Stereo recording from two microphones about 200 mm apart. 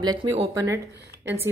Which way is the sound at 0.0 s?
20° right (ahead or behind).